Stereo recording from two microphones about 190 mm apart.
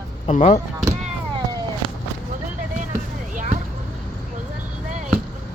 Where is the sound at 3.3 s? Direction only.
40° right (ahead or behind).